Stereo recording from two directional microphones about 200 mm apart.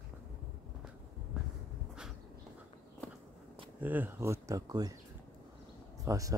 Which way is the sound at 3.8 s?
10° right (ahead or behind).